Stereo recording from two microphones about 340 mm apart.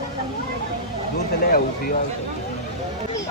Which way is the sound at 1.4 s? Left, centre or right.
Left.